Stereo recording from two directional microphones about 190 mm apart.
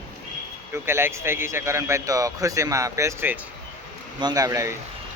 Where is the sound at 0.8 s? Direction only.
10° right (ahead or behind).